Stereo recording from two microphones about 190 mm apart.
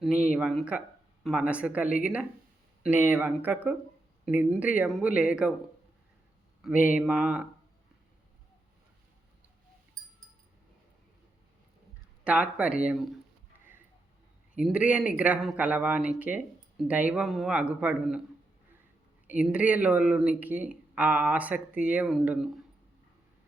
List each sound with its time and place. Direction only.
0.0 s speech: 5° right (ahead or behind)
1.9 s speech: 45° left (ahead or behind)
2.8 s speech: 10° right (ahead or behind)
6.6 s speech: 10° right (ahead or behind)
12.2 s speech: 5° right (ahead or behind)
14.5 s speech: 5° right (ahead or behind)
19.3 s speech: 5° right (ahead or behind)